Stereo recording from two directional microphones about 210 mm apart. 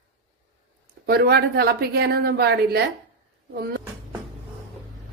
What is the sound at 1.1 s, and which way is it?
Speech, 50° right (ahead or behind).